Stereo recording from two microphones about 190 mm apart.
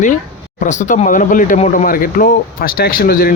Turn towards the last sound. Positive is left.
turn(degrees=50)  # may be behind; listen again after turning